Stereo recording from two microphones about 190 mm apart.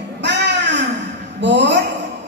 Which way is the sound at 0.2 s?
65° right (ahead or behind).